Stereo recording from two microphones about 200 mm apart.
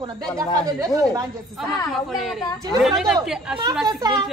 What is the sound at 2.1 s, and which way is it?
Speech, centre (ahead or behind).